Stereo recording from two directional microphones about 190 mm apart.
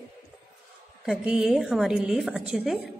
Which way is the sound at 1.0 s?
5° right (ahead or behind).